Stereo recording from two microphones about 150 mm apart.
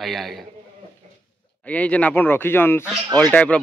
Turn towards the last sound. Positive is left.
turn(degrees=10)  # may be behind; listen again after turning